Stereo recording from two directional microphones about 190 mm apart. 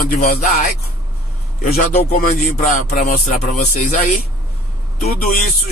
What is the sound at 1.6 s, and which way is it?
A man's voice, 50° left (ahead or behind).